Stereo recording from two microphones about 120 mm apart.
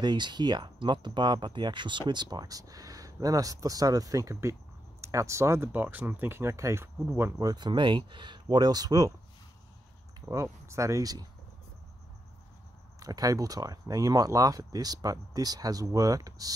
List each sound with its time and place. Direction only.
0.0 s speech: 40° right (ahead or behind)
10.2 s speech: 25° right (ahead or behind)
13.0 s speech: 30° right (ahead or behind)